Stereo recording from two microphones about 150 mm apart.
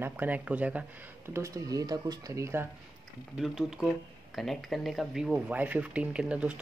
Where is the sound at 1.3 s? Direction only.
20° right (ahead or behind).